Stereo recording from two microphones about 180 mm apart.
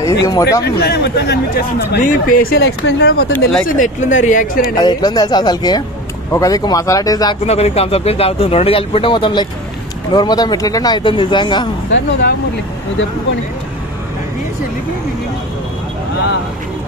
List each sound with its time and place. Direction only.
0.0 s speech: 20° left (ahead or behind)
0.7 s speech: 65° left (ahead or behind)
3.6 s speech: 45° left (ahead or behind)
4.7 s speech: 25° left (ahead or behind)
7.4 s speech: 35° left (ahead or behind)
11.9 s speech: 75° left (ahead or behind)